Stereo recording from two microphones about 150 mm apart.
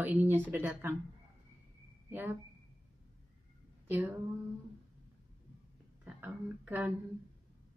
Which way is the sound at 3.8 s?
15° right (ahead or behind).